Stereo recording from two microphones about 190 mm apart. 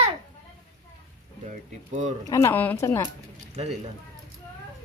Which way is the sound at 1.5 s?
40° right (ahead or behind).